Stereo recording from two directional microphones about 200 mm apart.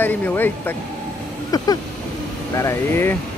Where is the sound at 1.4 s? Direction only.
20° left (ahead or behind).